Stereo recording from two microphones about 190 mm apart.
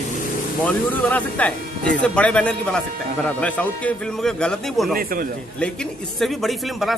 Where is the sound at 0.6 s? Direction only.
10° left (ahead or behind).